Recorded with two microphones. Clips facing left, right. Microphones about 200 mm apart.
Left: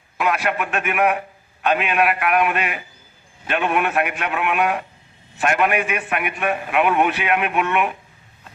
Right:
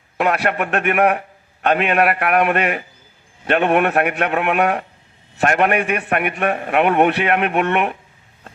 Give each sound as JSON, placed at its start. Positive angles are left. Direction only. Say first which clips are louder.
{"t": 0.2, "sound": "a man's voice", "louder": "right 3 dB", "side_deg": -60}